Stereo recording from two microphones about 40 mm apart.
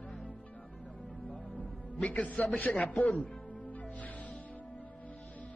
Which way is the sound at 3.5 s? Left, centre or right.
Left.